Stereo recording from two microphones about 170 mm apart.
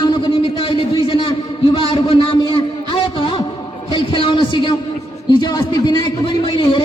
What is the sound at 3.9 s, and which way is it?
A man's voice, 30° left (ahead or behind).